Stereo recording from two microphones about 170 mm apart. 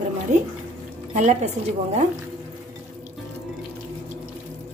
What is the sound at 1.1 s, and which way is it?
Speech, 45° right (ahead or behind).